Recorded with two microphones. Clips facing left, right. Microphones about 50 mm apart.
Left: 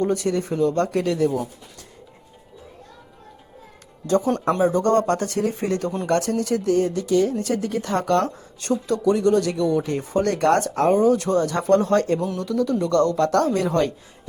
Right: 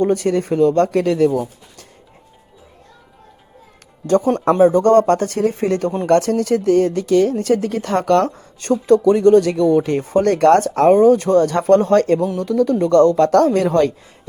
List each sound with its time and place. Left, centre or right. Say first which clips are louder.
0.0 s speech: right 5 dB; right
1.2 s speech: right 6 dB; right
4.0 s speech: right 5 dB; right
7.3 s speech: right 6 dB; right
8.2 s speech: right 5 dB; right